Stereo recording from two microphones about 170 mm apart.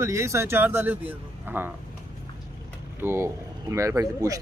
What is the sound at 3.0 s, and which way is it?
A man's voice, 15° right (ahead or behind).